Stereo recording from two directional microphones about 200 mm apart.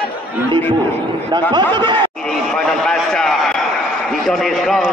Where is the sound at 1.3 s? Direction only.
20° right (ahead or behind).